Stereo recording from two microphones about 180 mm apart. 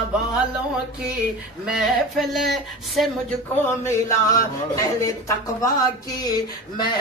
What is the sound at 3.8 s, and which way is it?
Speech, 15° left (ahead or behind).